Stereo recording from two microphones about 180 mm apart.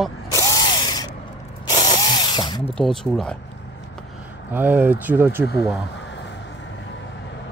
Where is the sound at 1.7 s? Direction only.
20° left (ahead or behind).